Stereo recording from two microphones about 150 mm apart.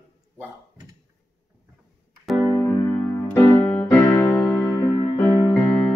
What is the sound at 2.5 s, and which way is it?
Music, 15° left (ahead or behind).